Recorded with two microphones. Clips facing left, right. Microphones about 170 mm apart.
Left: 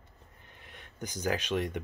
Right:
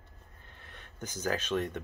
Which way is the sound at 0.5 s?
15° left (ahead or behind).